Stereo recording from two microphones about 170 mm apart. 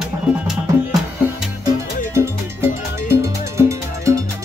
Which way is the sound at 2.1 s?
15° right (ahead or behind).